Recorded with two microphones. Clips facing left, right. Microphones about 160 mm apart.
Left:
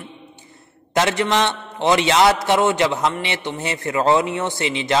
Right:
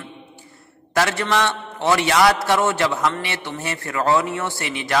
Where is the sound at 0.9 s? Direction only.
20° left (ahead or behind).